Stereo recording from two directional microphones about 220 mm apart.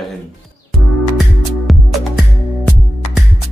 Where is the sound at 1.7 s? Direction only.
Centre (ahead or behind).